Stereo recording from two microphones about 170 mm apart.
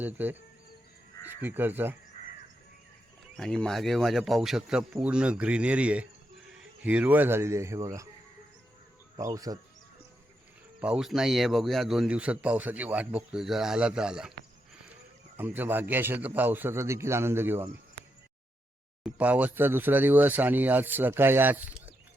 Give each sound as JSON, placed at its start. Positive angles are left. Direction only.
{"t": 0.0, "sound": "speech", "side_deg": -10}
{"t": 3.3, "sound": "a man's voice", "side_deg": 5}
{"t": 9.1, "sound": "speech", "side_deg": -20}
{"t": 10.8, "sound": "a man's voice", "side_deg": -5}
{"t": 15.4, "sound": "speech", "side_deg": -10}
{"t": 19.0, "sound": "speech", "side_deg": -10}